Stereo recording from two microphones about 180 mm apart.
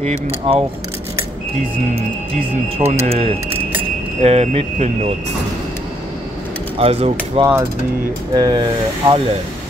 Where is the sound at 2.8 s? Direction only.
35° right (ahead or behind).